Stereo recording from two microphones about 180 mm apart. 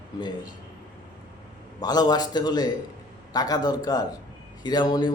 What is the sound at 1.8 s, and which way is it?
A man's voice, 20° left (ahead or behind).